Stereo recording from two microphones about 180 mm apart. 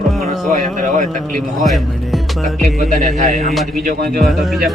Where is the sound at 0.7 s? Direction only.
45° right (ahead or behind).